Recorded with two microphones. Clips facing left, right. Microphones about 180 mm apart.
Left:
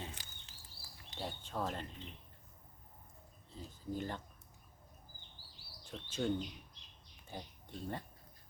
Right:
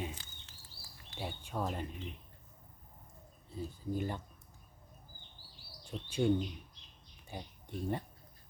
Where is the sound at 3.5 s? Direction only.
10° right (ahead or behind).